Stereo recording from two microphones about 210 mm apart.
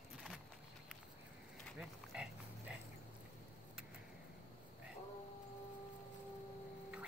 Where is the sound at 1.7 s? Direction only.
Centre (ahead or behind).